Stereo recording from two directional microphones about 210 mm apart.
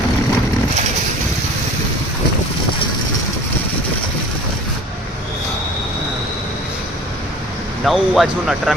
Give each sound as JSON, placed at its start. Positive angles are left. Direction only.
{"t": 7.9, "sound": "speech", "side_deg": 0}